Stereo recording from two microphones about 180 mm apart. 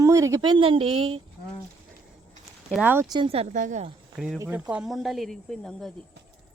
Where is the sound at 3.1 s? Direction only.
30° right (ahead or behind).